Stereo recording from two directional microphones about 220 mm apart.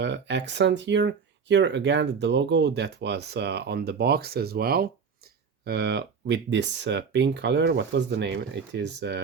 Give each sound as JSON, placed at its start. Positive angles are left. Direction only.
{"t": 0.0, "sound": "speech", "side_deg": -50}